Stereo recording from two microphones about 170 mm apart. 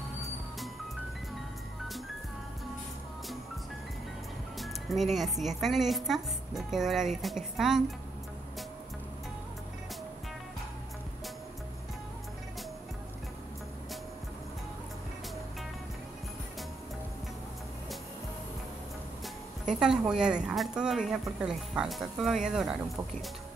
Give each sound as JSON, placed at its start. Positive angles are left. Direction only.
{"t": 4.6, "sound": "a woman's voice", "side_deg": 0}
{"t": 19.7, "sound": "a woman's voice", "side_deg": -5}